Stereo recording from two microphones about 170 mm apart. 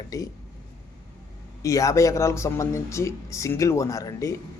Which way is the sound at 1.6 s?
20° left (ahead or behind).